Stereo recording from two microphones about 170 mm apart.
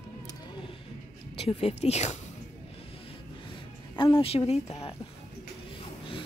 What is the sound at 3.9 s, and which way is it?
Speech, 30° left (ahead or behind).